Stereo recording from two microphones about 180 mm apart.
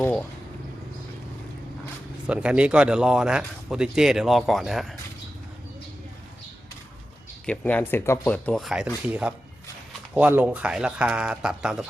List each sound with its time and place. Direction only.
0.0 s a sound: 10° left (ahead or behind)
2.2 s a man's voice: 5° right (ahead or behind)
7.4 s a man's voice: 5° left (ahead or behind)